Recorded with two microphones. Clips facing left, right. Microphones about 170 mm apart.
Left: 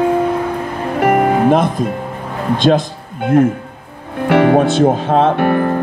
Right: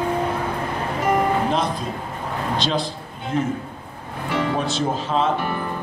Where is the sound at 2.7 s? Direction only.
60° left (ahead or behind).